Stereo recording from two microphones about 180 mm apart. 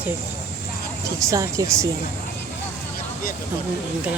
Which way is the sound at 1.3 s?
15° right (ahead or behind).